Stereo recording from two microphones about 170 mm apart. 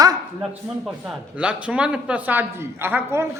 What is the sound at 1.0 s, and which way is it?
A man's voice, 5° right (ahead or behind).